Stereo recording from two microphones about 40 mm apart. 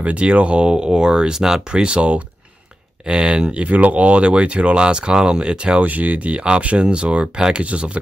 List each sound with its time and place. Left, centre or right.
0.0 s speech: right; by 1.8 s centre
1.8 s speech: right
3.5 s speech: right
5.8 s speech: right